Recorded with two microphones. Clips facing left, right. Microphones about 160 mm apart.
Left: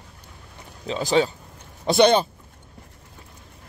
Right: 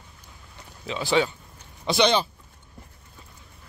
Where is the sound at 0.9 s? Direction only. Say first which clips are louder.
Left 3 dB; 40° left (ahead or behind).